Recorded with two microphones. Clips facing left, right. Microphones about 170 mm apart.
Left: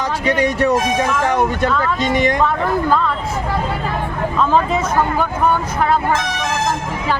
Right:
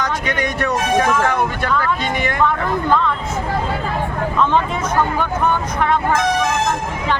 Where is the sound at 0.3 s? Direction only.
30° left (ahead or behind).